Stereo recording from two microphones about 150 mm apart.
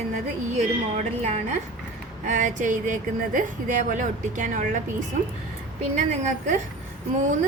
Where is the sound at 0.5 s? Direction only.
50° right (ahead or behind).